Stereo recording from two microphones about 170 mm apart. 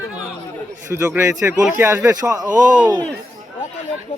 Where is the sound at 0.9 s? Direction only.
15° right (ahead or behind).